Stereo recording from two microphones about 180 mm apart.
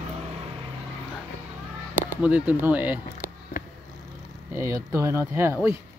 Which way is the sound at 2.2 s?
10° right (ahead or behind).